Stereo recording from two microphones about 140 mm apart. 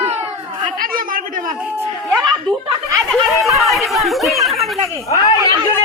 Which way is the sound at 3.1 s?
Centre (ahead or behind).